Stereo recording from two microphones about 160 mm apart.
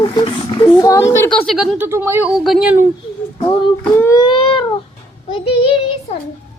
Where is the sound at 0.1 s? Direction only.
25° left (ahead or behind); by 1.9 s centre (ahead or behind).